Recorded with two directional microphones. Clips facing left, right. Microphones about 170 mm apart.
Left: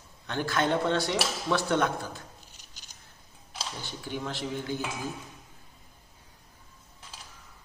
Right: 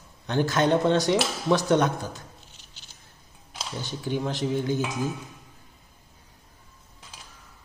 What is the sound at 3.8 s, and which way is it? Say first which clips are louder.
Speech: right 8 dB; 20° right (ahead or behind).